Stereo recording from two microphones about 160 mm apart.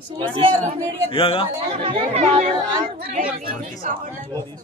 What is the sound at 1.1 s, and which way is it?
Speech, 35° left (ahead or behind).